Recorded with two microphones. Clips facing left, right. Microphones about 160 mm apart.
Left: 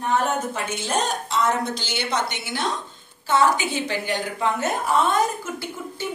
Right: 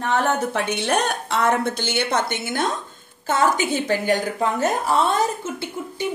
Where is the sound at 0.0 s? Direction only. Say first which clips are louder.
Right 2 dB; 85° right; by 5.1 s 35° right (ahead or behind).